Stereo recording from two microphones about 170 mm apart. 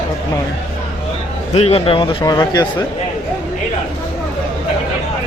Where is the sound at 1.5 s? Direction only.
35° left (ahead or behind).